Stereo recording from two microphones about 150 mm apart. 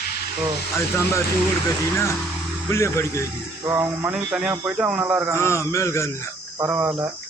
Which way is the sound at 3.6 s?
20° right (ahead or behind).